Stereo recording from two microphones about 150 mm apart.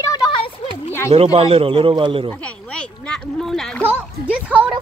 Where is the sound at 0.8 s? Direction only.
15° left (ahead or behind).